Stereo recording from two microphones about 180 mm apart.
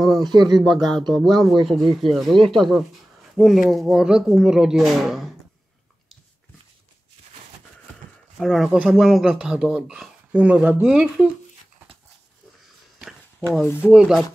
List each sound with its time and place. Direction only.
0.0 s a sound: centre (ahead or behind)
0.3 s speech: 25° right (ahead or behind)
0.6 s speech: centre (ahead or behind)
8.4 s speech: centre (ahead or behind)
13.0 s a sound: centre (ahead or behind)
13.7 s speech: 15° left (ahead or behind)
13.9 s speech: 5° right (ahead or behind)